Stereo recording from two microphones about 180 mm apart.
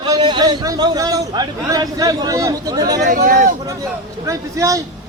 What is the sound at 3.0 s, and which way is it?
Speech, 50° right (ahead or behind).